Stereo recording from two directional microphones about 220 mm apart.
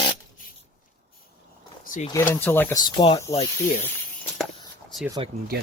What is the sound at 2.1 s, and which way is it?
Speech, 10° left (ahead or behind).